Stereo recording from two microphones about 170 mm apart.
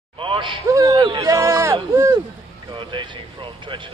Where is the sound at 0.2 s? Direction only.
30° right (ahead or behind).